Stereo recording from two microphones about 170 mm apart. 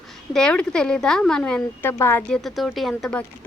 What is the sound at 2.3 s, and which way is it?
Speech, centre (ahead or behind).